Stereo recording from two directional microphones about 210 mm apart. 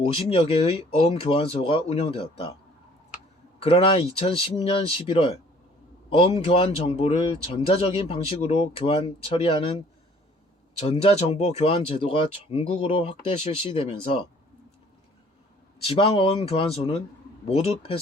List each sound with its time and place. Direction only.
0.0 s speech: 25° left (ahead or behind)
3.6 s speech: 25° left (ahead or behind)
15.8 s speech: 25° left (ahead or behind)